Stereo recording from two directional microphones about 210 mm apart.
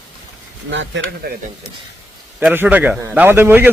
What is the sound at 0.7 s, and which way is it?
Speech, 60° right (ahead or behind).